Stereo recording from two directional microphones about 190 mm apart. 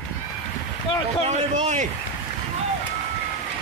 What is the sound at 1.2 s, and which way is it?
Speech, 35° right (ahead or behind).